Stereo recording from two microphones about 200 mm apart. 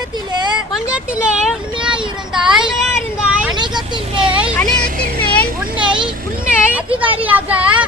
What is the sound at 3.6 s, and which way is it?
Speech, 20° right (ahead or behind).